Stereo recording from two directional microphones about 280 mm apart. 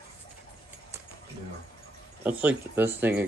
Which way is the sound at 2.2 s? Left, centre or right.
Centre.